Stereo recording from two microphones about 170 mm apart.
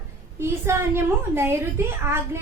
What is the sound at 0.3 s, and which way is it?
A woman's voice, 15° right (ahead or behind).